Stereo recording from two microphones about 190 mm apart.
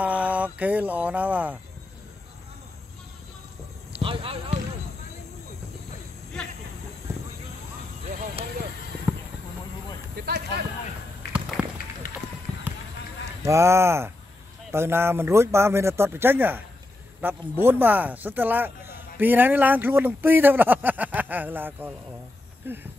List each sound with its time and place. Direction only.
0.0 s speech: 10° right (ahead or behind)
4.0 s basketball bounce: 30° right (ahead or behind)
11.3 s run: centre (ahead or behind)
12.0 s run: 50° left (ahead or behind)
13.5 s speech: 15° right (ahead or behind)